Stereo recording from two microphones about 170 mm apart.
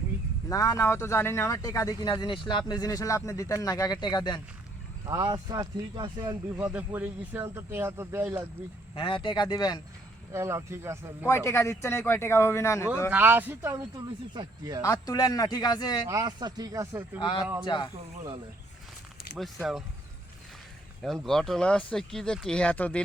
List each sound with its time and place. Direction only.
0.4 s speech: 20° left (ahead or behind)
5.0 s speech: 20° right (ahead or behind)
6.7 s speech: 10° right (ahead or behind)
9.0 s speech: 30° left (ahead or behind)
10.3 s speech: 15° right (ahead or behind)
11.3 s speech: 15° left (ahead or behind)
13.1 s speech: 10° right (ahead or behind)
14.8 s speech: 20° left (ahead or behind)
16.0 s speech: 20° right (ahead or behind)
17.2 s speech: 25° left (ahead or behind)
19.4 s speech: centre (ahead or behind)
21.0 s speech: centre (ahead or behind)